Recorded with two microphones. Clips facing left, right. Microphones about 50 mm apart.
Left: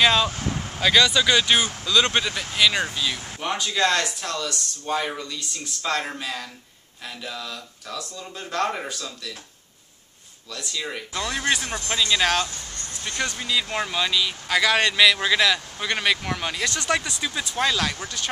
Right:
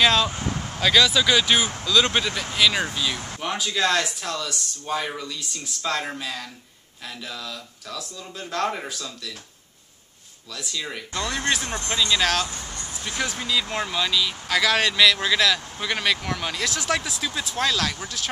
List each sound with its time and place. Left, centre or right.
0.0 s speech: centre
10.5 s speech: centre
11.6 s speech: right
11.9 s speech: centre
12.2 s speech: centre
12.4 s music: centre
12.9 s speech: centre